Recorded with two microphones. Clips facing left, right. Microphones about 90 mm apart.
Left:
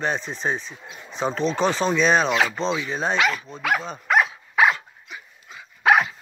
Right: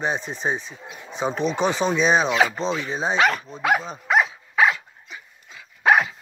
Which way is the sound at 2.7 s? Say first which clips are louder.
Even; 40° right (ahead or behind).